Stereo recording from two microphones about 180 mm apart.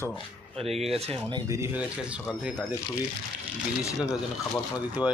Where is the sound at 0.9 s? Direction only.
35° right (ahead or behind).